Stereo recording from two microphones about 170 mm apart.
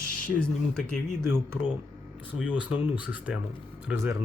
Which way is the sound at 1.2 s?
15° right (ahead or behind).